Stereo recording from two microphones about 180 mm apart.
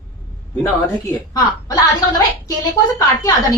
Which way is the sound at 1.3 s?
20° left (ahead or behind).